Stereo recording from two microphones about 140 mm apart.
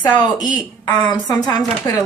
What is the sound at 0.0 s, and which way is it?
Speech, 30° left (ahead or behind).